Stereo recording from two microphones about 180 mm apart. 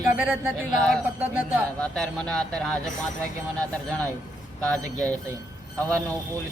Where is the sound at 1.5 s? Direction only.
5° left (ahead or behind).